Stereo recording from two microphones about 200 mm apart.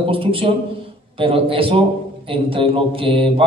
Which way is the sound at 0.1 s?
30° right (ahead or behind).